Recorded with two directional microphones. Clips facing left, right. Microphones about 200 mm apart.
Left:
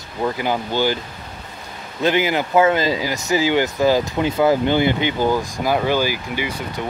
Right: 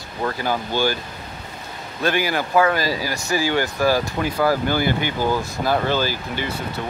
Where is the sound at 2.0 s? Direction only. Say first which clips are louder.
Left 3 dB; 20° left (ahead or behind).